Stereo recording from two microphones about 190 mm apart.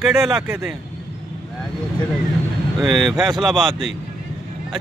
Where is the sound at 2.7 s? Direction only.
Centre (ahead or behind).